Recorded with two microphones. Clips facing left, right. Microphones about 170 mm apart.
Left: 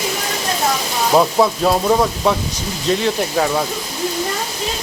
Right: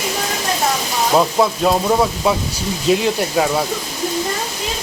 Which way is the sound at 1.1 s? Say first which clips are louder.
Left 2 dB; centre (ahead or behind).